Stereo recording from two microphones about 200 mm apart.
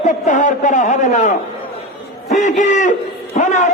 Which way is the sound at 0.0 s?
40° left (ahead or behind).